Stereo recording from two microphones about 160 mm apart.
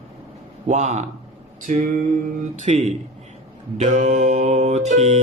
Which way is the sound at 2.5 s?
45° right (ahead or behind).